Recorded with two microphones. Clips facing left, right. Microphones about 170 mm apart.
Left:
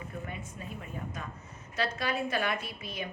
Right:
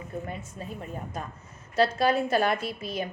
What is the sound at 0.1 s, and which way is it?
A woman's voice, 35° right (ahead or behind).